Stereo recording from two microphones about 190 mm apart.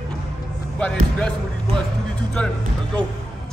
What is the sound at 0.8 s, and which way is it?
Speech, 5° left (ahead or behind).